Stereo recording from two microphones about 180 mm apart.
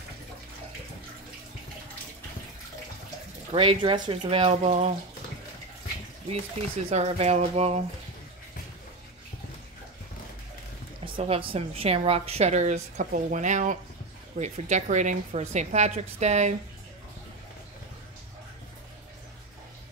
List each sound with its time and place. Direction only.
3.5 s a woman's voice: 30° right (ahead or behind)
6.6 s a woman's voice: 35° right (ahead or behind)
11.1 s a woman's voice: 30° right (ahead or behind)